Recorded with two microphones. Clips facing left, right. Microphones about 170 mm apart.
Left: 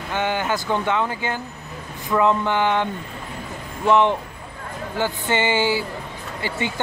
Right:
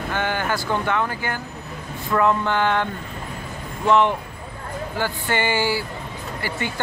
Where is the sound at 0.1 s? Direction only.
20° left (ahead or behind).